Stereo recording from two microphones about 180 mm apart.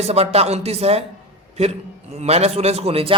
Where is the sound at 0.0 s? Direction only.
35° right (ahead or behind).